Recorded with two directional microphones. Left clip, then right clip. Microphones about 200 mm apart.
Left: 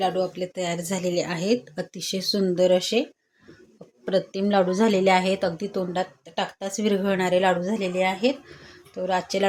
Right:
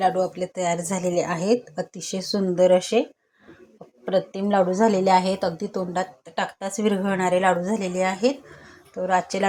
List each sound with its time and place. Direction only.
0.0 s a woman's voice: centre (ahead or behind)
4.0 s a woman's voice: 20° left (ahead or behind); by 9.5 s centre (ahead or behind)